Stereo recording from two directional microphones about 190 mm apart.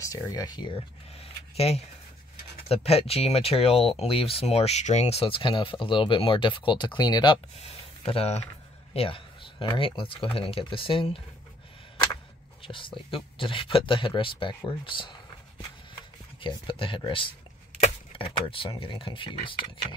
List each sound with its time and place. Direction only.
0.0 s speech: 15° left (ahead or behind)
12.6 s speech: 25° left (ahead or behind)
16.3 s speech: 25° left (ahead or behind)